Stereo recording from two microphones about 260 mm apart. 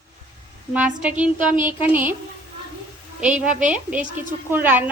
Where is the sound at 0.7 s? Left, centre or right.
Centre.